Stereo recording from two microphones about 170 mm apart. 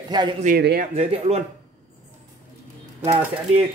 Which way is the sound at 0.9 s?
40° right (ahead or behind).